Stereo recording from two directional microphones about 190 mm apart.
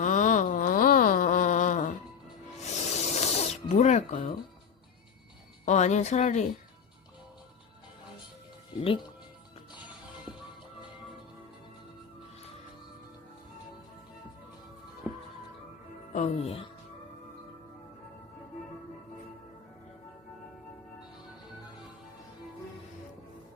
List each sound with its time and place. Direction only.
0.0 s a sound: 40° left (ahead or behind)
2.6 s snake: 35° left (ahead or behind)
5.6 s speech: 35° left (ahead or behind)
16.1 s speech: 35° left (ahead or behind)